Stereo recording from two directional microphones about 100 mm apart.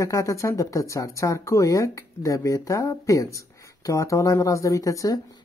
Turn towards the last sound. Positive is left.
turn(degrees=35)  # may be behind; listen again after turning